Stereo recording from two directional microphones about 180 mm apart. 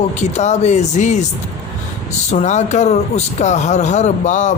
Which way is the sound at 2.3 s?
40° left (ahead or behind).